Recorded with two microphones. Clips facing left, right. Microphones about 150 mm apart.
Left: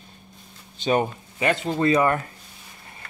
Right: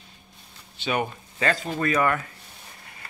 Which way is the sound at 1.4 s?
20° left (ahead or behind).